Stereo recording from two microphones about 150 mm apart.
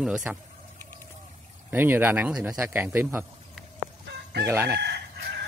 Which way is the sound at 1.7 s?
15° right (ahead or behind).